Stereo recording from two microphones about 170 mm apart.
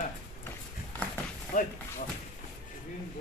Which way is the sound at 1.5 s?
50° left (ahead or behind).